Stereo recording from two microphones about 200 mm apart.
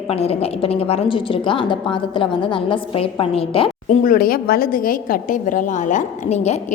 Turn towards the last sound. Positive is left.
turn(degrees=35)  # may be behind; listen again after turning